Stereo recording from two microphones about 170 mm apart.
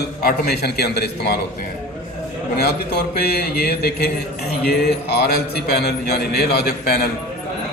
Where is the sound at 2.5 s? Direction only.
65° left (ahead or behind).